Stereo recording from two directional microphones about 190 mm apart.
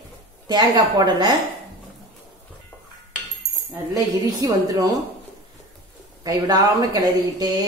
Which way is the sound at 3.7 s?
15° right (ahead or behind).